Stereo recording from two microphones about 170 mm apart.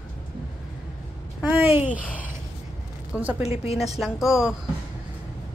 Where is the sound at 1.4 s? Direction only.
10° right (ahead or behind).